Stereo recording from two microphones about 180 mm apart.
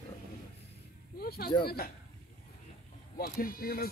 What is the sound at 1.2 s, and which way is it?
Speech, 60° left (ahead or behind).